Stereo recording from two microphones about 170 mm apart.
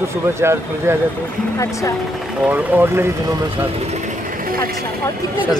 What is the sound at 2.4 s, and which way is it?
Speech, 10° right (ahead or behind).